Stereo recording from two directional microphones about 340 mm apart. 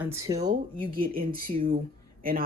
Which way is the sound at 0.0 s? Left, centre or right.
Centre.